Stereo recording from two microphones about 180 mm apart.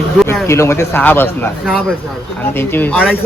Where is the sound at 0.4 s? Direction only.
15° left (ahead or behind).